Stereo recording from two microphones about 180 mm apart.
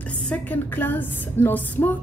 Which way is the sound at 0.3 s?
10° left (ahead or behind).